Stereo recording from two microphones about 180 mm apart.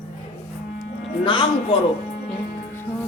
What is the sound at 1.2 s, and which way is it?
Speech, 25° left (ahead or behind).